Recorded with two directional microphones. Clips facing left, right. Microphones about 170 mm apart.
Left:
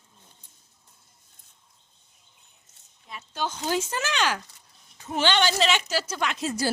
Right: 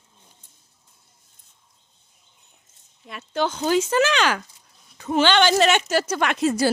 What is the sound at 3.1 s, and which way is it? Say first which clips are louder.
Speech: right 7 dB; 70° right (ahead or behind).